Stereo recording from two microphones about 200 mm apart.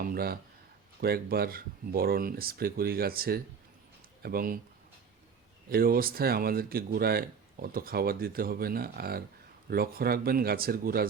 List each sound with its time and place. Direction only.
0.0 s a sound: 50° right (ahead or behind)
1.0 s speech: 50° right (ahead or behind)
5.6 s speech: 50° right (ahead or behind)